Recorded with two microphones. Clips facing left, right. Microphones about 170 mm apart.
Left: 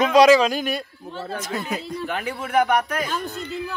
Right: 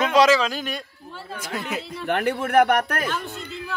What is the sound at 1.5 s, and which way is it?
Speech, 35° left (ahead or behind).